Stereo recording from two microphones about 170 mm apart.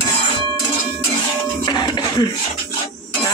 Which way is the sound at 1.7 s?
25° left (ahead or behind).